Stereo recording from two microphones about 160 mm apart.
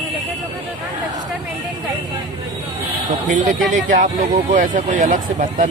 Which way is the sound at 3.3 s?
50° right (ahead or behind).